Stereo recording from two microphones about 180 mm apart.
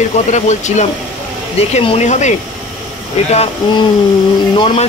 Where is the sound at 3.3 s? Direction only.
35° left (ahead or behind).